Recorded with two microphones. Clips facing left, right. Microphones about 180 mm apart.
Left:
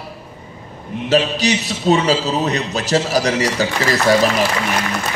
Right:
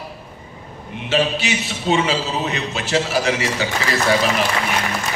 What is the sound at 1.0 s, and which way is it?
A man's voice, 40° left (ahead or behind).